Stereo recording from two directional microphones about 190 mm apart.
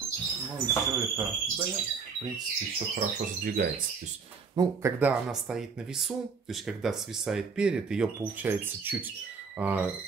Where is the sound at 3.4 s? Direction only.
50° right (ahead or behind).